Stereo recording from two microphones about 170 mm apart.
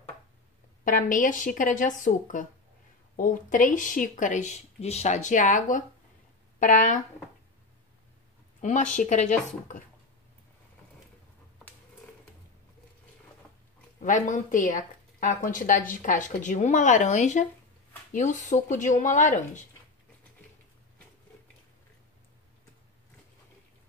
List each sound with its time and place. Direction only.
0.8 s speech: 50° left (ahead or behind)
8.5 s speech: 45° left (ahead or behind)
13.9 s speech: 45° left (ahead or behind)